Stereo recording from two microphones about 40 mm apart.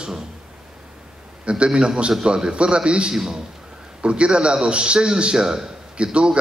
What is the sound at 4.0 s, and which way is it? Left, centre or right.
A man's voice, right.